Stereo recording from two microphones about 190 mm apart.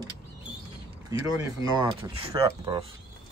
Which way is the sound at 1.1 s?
20° right (ahead or behind).